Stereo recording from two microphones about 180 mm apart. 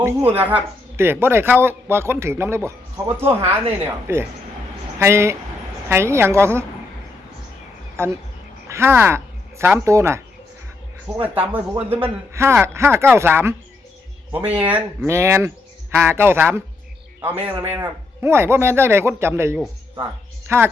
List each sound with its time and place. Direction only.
0.0 s speech: 10° right (ahead or behind)
8.7 s speech: 15° right (ahead or behind)